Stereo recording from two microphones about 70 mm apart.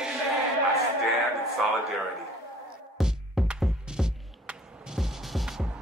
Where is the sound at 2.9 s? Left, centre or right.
Centre.